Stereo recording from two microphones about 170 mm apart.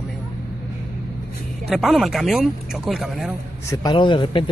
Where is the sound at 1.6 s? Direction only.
Centre (ahead or behind).